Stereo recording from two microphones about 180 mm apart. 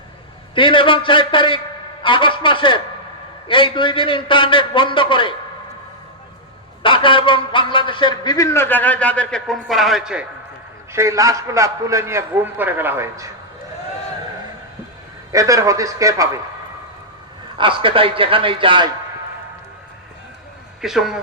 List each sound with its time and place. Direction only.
0.5 s a man's voice: 30° left (ahead or behind)
6.8 s a man's voice: 30° left (ahead or behind); by 10.2 s 5° right (ahead or behind)
10.9 s a man's voice: 15° right (ahead or behind)
15.3 s a man's voice: 20° right (ahead or behind)
17.6 s a man's voice: 30° right (ahead or behind)
20.8 s speech: 5° right (ahead or behind)